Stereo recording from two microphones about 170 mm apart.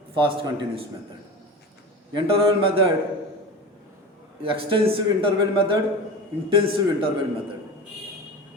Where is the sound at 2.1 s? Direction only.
30° right (ahead or behind).